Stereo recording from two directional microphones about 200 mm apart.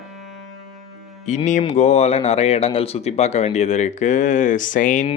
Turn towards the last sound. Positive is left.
turn(degrees=40)  # may be behind; listen again after turning